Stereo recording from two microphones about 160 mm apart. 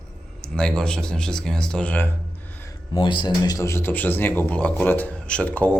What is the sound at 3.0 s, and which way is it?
Speech, 30° left (ahead or behind).